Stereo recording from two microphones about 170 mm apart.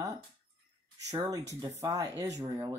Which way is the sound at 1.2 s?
20° right (ahead or behind).